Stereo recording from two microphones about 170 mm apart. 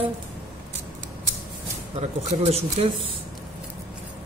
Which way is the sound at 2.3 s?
40° right (ahead or behind).